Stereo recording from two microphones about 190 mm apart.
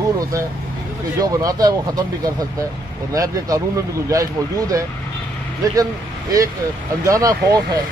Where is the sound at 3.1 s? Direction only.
20° right (ahead or behind).